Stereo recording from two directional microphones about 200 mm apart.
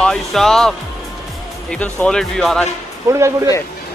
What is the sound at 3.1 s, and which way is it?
Speech, 15° right (ahead or behind).